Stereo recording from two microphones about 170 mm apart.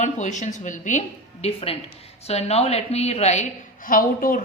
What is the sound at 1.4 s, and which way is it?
A woman's voice, 35° left (ahead or behind).